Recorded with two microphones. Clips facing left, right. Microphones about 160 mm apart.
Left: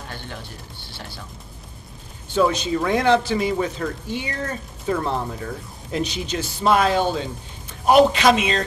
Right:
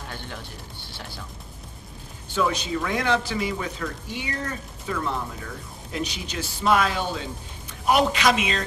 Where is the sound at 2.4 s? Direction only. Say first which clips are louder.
Left 5 dB; 30° left (ahead or behind).